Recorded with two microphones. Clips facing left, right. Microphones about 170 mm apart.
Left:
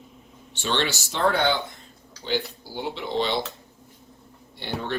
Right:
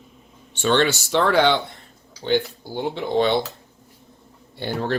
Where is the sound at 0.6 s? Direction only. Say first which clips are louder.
Right 7 dB; 50° right (ahead or behind); by 1.8 s 75° right (ahead or behind).